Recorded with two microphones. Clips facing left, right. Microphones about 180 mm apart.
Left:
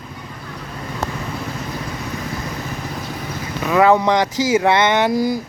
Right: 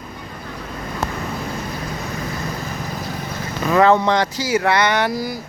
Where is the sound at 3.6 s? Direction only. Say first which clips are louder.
Even; 5° left (ahead or behind).